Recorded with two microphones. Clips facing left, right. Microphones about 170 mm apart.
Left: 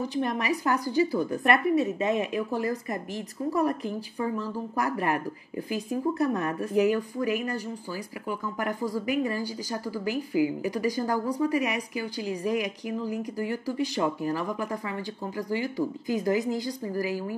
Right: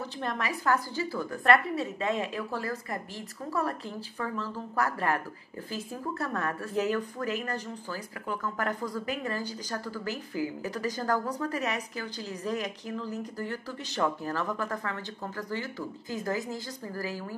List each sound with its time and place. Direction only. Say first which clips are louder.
0.0 s speech: left 5 dB; 15° left (ahead or behind)